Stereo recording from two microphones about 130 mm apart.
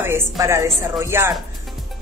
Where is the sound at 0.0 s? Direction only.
20° right (ahead or behind).